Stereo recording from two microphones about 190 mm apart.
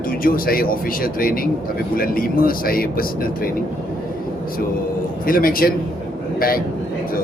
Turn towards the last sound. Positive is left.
turn(degrees=50)  # may be behind; listen again after turning